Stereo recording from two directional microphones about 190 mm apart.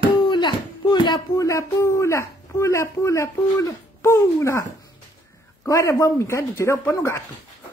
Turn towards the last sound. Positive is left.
turn(degrees=15)  # may be behind; listen again after turning